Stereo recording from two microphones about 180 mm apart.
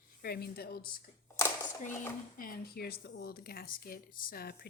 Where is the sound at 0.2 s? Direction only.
60° left (ahead or behind).